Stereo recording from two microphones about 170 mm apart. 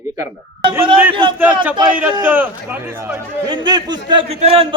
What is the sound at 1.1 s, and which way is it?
Speech, 30° right (ahead or behind).